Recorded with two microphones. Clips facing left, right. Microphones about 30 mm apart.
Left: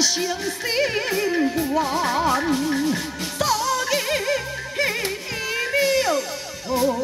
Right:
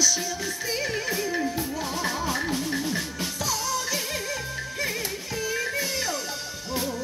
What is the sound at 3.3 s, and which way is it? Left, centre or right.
Music, left.